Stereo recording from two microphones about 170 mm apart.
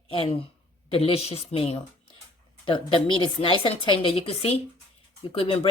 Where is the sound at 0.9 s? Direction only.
35° left (ahead or behind).